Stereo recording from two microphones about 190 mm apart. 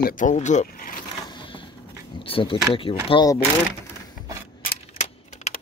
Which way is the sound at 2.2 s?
30° left (ahead or behind).